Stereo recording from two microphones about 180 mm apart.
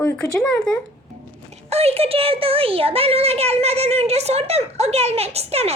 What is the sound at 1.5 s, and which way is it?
A child's voice, 35° right (ahead or behind).